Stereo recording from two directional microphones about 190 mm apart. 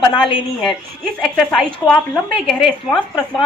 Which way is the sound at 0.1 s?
25° left (ahead or behind).